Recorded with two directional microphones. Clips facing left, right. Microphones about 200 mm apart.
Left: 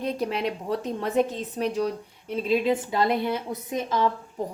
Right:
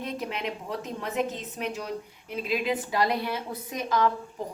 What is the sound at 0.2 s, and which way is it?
A woman's voice, 35° left (ahead or behind).